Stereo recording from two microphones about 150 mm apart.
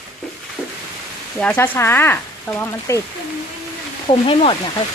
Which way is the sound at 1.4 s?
15° left (ahead or behind).